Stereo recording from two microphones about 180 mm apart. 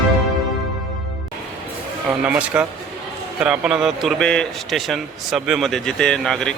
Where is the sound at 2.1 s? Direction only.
5° right (ahead or behind).